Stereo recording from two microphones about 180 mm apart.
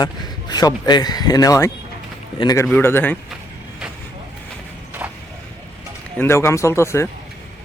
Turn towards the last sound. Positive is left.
turn(degrees=15)  # may be behind; listen again after turning